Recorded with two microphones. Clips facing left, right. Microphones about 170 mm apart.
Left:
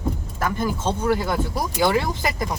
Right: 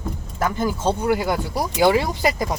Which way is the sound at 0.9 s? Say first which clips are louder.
Right 2 dB; 10° right (ahead or behind).